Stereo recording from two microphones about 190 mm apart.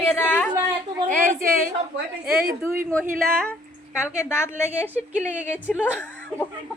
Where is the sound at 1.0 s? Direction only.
45° right (ahead or behind).